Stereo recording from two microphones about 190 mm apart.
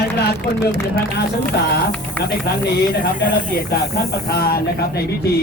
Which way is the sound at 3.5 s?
55° left (ahead or behind).